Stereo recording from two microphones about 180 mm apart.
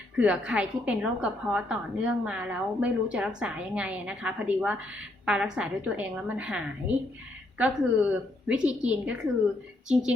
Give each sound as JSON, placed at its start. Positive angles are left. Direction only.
{"t": 0.2, "sound": "a woman's voice", "side_deg": -5}